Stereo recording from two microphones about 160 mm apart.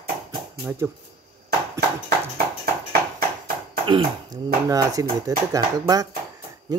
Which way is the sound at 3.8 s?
25° right (ahead or behind).